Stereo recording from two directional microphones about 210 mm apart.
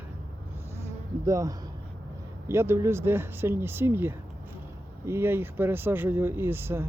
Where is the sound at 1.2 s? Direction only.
15° right (ahead or behind).